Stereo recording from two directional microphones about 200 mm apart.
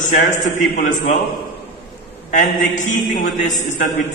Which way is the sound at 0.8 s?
40° left (ahead or behind).